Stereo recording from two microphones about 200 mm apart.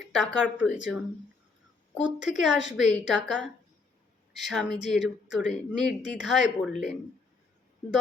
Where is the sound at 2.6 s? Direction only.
65° left (ahead or behind).